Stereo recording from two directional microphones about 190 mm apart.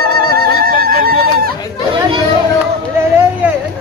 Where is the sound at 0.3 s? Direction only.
50° right (ahead or behind).